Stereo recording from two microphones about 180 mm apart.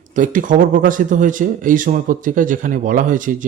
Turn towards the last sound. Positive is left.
turn(degrees=-45)  # may be behind; listen again after turning